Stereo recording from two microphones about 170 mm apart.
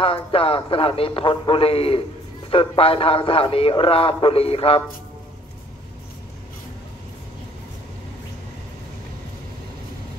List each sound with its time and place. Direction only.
0.0 s a man's voice: 35° left (ahead or behind)